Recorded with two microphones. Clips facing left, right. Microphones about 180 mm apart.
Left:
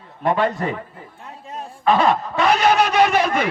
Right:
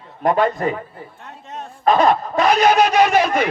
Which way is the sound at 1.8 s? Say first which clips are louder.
Right 2 dB; 40° right (ahead or behind).